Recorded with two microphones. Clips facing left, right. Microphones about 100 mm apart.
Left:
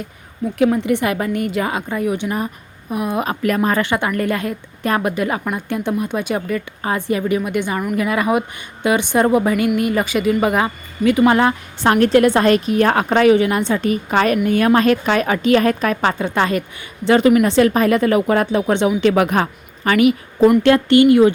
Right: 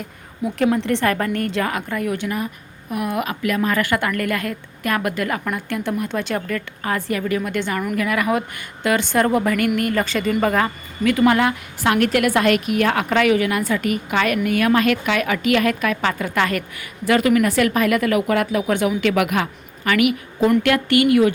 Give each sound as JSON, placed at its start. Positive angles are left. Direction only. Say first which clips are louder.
{"t": 0.6, "sound": "a woman's voice", "louder": "left 2 dB", "side_deg": 5}
{"t": 1.6, "sound": "a woman's voice", "louder": "left 3 dB", "side_deg": 20}
{"t": 3.2, "sound": "a woman's voice", "louder": "left 3 dB", "side_deg": 40}
{"t": 11.3, "sound": "a woman's voice", "louder": "left 3 dB", "side_deg": 30}
{"t": 16.1, "sound": "a woman's voice", "louder": "left 3 dB", "side_deg": 25}